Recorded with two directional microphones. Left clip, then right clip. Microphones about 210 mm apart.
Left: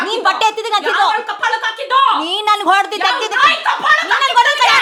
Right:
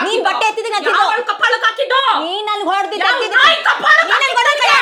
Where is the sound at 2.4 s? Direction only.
25° left (ahead or behind).